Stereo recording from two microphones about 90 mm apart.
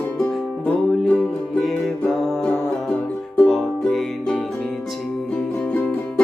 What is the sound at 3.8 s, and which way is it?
Music, 10° left (ahead or behind).